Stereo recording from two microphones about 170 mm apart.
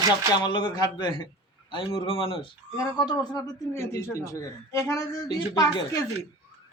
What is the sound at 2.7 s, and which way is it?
Speech, 20° left (ahead or behind).